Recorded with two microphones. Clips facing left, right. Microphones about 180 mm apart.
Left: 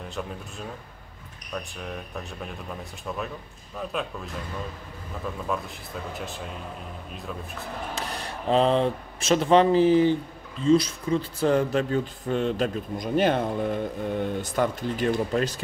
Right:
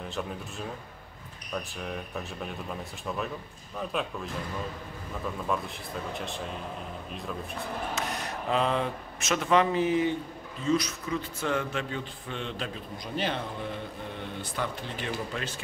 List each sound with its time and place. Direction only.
1.5 s speech: centre (ahead or behind)
5.5 s speech: centre (ahead or behind)
7.9 s speech: 30° left (ahead or behind)